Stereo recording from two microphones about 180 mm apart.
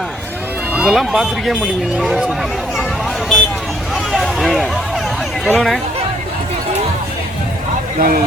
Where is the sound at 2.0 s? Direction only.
Centre (ahead or behind).